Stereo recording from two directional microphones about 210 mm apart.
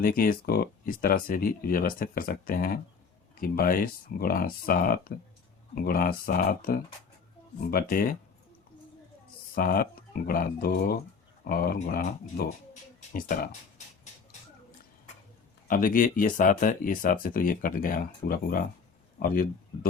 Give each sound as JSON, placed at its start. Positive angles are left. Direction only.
{"t": 0.0, "sound": "speech", "side_deg": 45}
{"t": 9.6, "sound": "speech", "side_deg": 45}
{"t": 15.6, "sound": "speech", "side_deg": 40}